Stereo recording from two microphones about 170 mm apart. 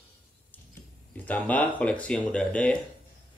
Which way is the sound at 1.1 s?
10° left (ahead or behind).